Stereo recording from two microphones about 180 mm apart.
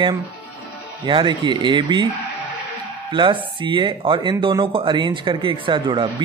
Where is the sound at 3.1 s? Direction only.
25° right (ahead or behind).